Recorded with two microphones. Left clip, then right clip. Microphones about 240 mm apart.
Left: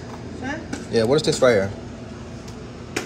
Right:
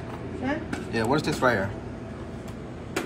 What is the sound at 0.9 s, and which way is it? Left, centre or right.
Speech, left.